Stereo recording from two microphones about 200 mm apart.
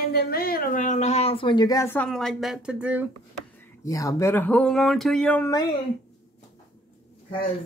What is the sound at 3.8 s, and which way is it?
Speech, 15° left (ahead or behind).